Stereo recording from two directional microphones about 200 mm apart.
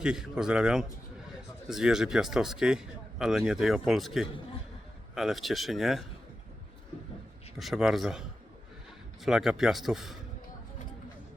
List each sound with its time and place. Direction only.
0.0 s a man's voice: 5° right (ahead or behind)
7.6 s a man's voice: centre (ahead or behind)
9.2 s a man's voice: centre (ahead or behind)